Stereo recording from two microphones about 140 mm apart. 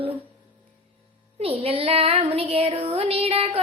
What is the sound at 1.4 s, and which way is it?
Child singing, 45° right (ahead or behind).